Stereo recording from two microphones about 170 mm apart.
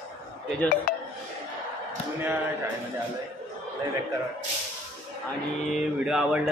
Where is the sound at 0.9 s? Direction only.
55° left (ahead or behind).